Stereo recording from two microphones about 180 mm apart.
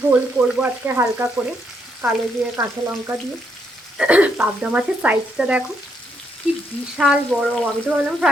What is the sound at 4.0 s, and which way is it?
Speech, 5° right (ahead or behind).